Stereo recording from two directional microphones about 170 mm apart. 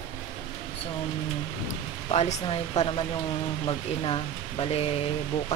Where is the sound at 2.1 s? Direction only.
35° left (ahead or behind).